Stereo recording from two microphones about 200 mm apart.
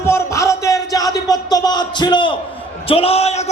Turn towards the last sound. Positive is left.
turn(degrees=30)  # may be behind; listen again after turning